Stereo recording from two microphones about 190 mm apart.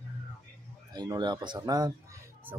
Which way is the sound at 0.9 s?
20° right (ahead or behind).